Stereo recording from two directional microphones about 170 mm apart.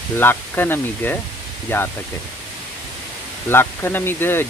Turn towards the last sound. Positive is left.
turn(degrees=15)  # may be behind; listen again after turning